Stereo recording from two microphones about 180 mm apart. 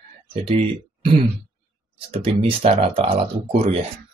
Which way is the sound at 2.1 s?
35° right (ahead or behind).